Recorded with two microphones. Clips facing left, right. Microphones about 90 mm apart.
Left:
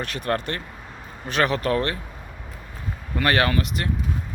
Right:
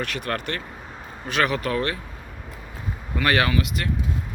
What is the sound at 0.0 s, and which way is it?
Speech, 35° left (ahead or behind).